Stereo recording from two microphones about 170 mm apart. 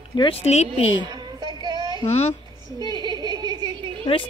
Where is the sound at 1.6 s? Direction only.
25° right (ahead or behind).